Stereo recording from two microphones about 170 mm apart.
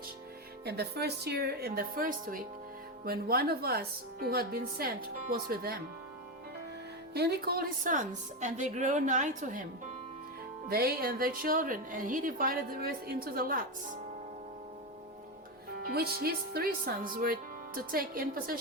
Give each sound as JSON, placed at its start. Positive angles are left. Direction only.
{"t": 0.6, "sound": "a woman's voice", "side_deg": -70}
{"t": 7.1, "sound": "a woman's voice", "side_deg": -70}
{"t": 10.7, "sound": "a woman's voice", "side_deg": -60}
{"t": 15.8, "sound": "a woman's voice", "side_deg": -65}